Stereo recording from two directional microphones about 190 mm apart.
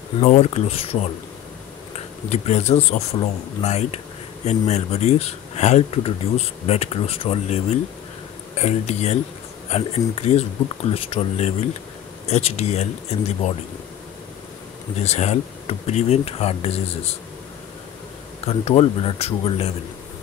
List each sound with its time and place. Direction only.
0.2 s speech: 35° left (ahead or behind)
2.0 s speech: 35° left (ahead or behind)
15.0 s speech: 35° left (ahead or behind)
18.4 s speech: 30° left (ahead or behind)